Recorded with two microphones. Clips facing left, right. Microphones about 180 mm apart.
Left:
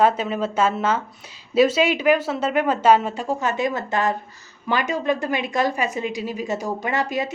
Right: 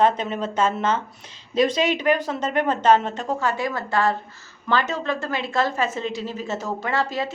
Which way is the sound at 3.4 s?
20° left (ahead or behind).